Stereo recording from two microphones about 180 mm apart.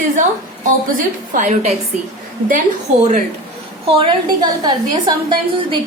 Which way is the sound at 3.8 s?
30° right (ahead or behind).